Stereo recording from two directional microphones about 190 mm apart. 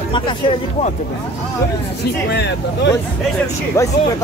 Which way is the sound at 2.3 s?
60° left (ahead or behind).